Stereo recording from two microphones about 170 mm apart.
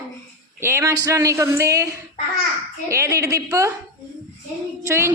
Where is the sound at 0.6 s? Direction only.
15° right (ahead or behind).